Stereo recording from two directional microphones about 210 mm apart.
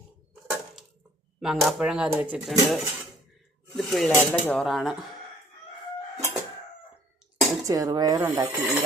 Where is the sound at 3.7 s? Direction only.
Centre (ahead or behind).